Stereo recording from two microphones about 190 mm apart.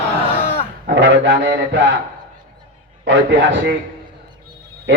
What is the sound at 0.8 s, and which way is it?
Speech, 65° right (ahead or behind).